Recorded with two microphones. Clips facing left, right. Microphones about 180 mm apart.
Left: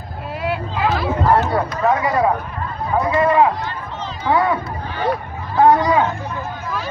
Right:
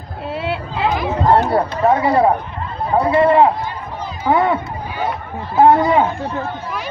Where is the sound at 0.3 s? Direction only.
25° right (ahead or behind).